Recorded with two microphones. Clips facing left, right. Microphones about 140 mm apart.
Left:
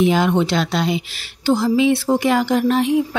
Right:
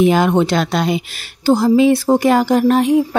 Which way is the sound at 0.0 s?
50° right (ahead or behind).